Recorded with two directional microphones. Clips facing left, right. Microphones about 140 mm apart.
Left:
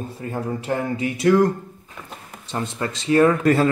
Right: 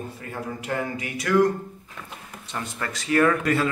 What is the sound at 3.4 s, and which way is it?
Speech, 40° left (ahead or behind).